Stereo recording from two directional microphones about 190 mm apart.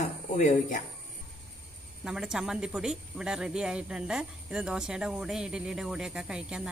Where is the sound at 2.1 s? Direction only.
5° right (ahead or behind).